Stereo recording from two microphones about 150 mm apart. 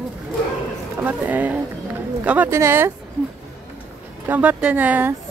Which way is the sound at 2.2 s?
10° right (ahead or behind).